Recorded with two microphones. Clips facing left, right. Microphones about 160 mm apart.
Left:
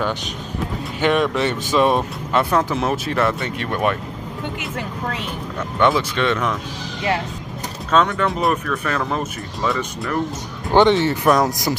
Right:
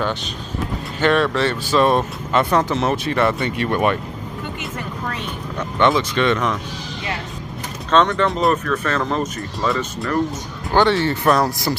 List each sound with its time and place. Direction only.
1.0 s speech: 15° left (ahead or behind)
5.6 s speech: 5° left (ahead or behind)
7.9 s speech: 5° left (ahead or behind)
10.7 s speech: 20° left (ahead or behind)